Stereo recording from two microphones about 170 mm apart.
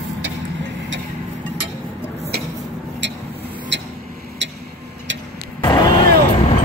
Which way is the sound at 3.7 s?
90° right.